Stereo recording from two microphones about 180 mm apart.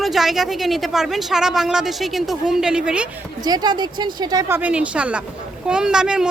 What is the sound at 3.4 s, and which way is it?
Speech, 20° right (ahead or behind).